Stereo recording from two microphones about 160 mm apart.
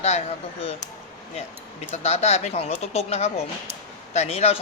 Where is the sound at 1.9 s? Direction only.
40° left (ahead or behind).